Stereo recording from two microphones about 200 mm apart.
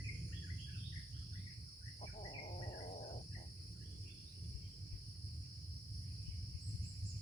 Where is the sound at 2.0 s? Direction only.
35° left (ahead or behind).